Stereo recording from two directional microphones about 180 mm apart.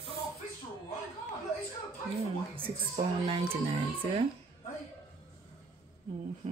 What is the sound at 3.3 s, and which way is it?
Speech, 30° right (ahead or behind).